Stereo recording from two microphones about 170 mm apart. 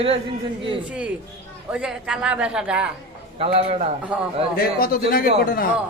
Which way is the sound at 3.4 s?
35° right (ahead or behind).